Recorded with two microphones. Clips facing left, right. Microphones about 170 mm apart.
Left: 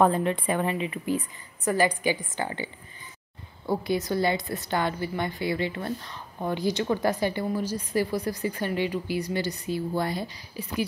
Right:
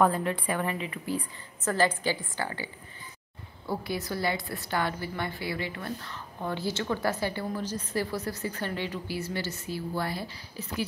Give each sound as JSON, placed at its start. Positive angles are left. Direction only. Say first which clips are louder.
{"t": 0.0, "sound": "a woman's voice", "louder": "left 3 dB", "side_deg": 20}
{"t": 6.0, "sound": "a woman's voice", "louder": "left 3 dB", "side_deg": 15}